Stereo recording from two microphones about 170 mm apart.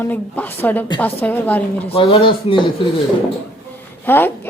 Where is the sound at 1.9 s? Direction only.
35° left (ahead or behind).